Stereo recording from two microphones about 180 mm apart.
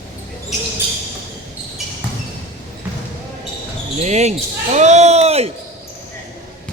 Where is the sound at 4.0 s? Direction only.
40° right (ahead or behind).